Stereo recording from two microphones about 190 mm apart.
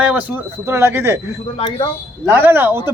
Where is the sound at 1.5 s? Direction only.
30° left (ahead or behind).